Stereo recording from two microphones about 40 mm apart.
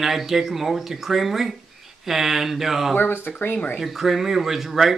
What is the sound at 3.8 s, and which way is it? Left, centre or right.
Speech, centre.